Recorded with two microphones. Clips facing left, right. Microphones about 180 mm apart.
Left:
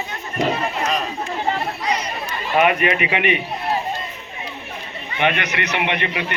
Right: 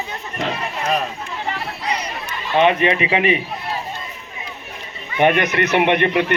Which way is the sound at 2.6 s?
30° right (ahead or behind).